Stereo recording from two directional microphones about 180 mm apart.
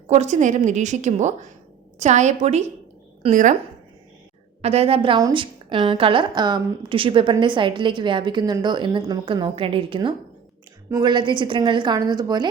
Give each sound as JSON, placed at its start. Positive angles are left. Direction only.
{"t": 0.1, "sound": "a woman's voice", "side_deg": -40}
{"t": 4.6, "sound": "a woman's voice", "side_deg": -35}